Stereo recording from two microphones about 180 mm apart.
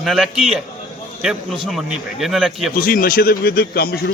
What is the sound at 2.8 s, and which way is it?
A man's voice, 55° left (ahead or behind).